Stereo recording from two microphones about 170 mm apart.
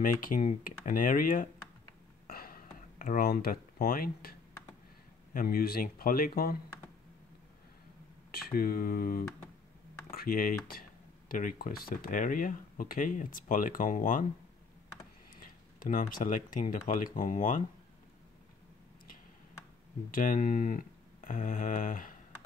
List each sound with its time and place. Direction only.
0.0 s speech: 55° left (ahead or behind)
2.2 s a sound: 60° left (ahead or behind)
5.3 s speech: 55° left (ahead or behind)
8.3 s speech: 60° left (ahead or behind)
15.4 s speech: 50° left (ahead or behind)
20.1 s speech: 55° left (ahead or behind)